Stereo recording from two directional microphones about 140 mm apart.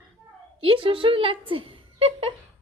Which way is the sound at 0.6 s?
40° right (ahead or behind).